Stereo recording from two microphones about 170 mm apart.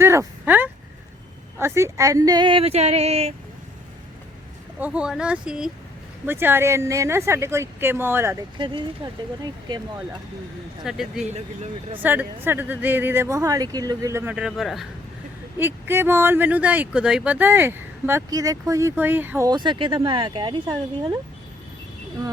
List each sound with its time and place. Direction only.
0.0 s a sound: 15° right (ahead or behind)
1.5 s speech: 15° right (ahead or behind); by 3.3 s 40° right (ahead or behind)
4.8 s speech: 5° right (ahead or behind)
8.5 s speech: 30° right (ahead or behind)
10.8 s speech: centre (ahead or behind)
11.2 s speech: 40° right (ahead or behind)
12.0 s speech: 10° right (ahead or behind)
15.5 s speech: 15° right (ahead or behind)
19.5 s speech: 25° right (ahead or behind)